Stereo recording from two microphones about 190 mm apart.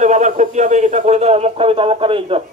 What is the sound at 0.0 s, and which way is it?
Speech, 40° right (ahead or behind).